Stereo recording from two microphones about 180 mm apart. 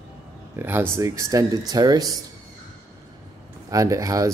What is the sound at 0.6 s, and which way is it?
Speech, 10° right (ahead or behind).